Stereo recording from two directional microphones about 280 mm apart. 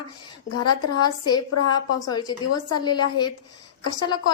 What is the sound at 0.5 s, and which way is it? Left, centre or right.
A woman's voice, left.